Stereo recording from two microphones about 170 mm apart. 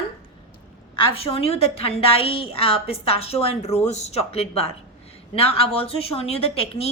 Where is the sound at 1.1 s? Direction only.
35° left (ahead or behind).